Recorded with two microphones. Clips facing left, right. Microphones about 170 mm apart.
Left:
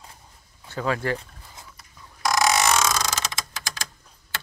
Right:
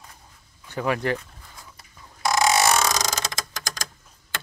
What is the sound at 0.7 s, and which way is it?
Speech, 15° right (ahead or behind).